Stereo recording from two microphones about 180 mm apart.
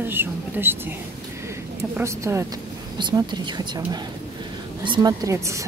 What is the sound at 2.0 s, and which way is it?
A woman's voice, 15° right (ahead or behind).